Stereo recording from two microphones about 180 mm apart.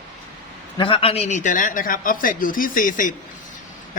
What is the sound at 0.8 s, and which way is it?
Speech, 30° left (ahead or behind).